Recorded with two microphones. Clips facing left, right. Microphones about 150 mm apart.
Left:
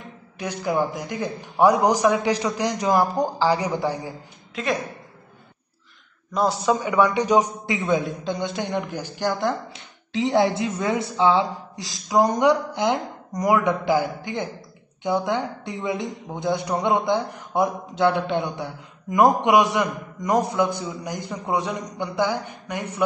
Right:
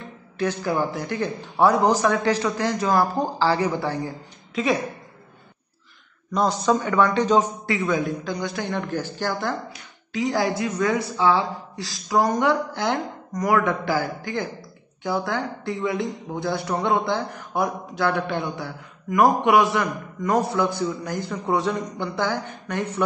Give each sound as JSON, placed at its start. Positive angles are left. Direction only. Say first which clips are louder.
{"t": 0.4, "sound": "a man's voice", "louder": "even", "side_deg": 15}
{"t": 6.3, "sound": "a man's voice", "louder": "even", "side_deg": 5}